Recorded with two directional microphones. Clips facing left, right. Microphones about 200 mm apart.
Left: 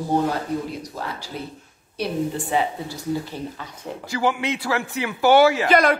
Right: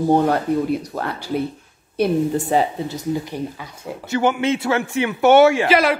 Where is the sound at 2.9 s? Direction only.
15° right (ahead or behind).